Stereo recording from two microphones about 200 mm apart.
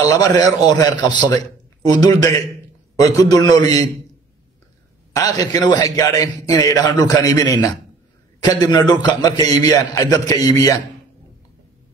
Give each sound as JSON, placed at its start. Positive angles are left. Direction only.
{"t": 0.1, "sound": "a man's voice", "side_deg": 20}
{"t": 5.1, "sound": "a man's voice", "side_deg": 20}